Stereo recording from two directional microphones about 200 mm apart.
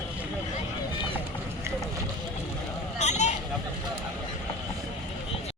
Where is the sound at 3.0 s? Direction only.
35° left (ahead or behind).